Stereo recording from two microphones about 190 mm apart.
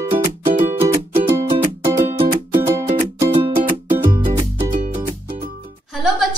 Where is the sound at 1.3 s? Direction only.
20° right (ahead or behind).